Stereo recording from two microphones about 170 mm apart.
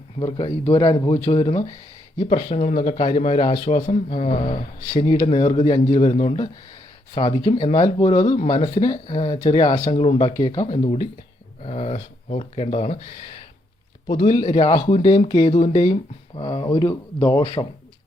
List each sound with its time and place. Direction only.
0.2 s speech: 30° left (ahead or behind)
7.1 s speech: 30° left (ahead or behind)
7.9 s speech: 25° left (ahead or behind)
8.4 s speech: 40° left (ahead or behind)
10.3 s speech: 20° left (ahead or behind)
10.6 s speech: 40° left (ahead or behind)
14.3 s speech: 30° left (ahead or behind)